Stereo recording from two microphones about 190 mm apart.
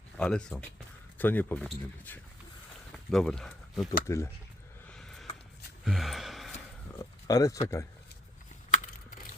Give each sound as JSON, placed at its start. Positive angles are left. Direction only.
{"t": 0.2, "sound": "speech", "side_deg": 5}
{"t": 4.0, "sound": "speech", "side_deg": 15}
{"t": 4.9, "sound": "a sound", "side_deg": 5}
{"t": 5.8, "sound": "gasp", "side_deg": 0}
{"t": 7.0, "sound": "speech", "side_deg": 20}
{"t": 8.7, "sound": "a sound", "side_deg": 45}